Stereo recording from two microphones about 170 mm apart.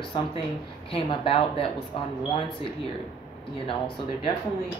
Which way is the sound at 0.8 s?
30° left (ahead or behind).